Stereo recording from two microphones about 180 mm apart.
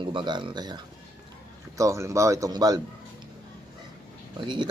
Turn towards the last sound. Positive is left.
turn(degrees=-25)  # may be behind; listen again after turning